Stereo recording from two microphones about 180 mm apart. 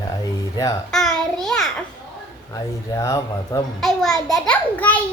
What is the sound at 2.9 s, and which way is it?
Speech, 20° left (ahead or behind).